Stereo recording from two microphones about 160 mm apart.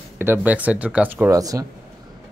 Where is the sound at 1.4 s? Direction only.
20° right (ahead or behind).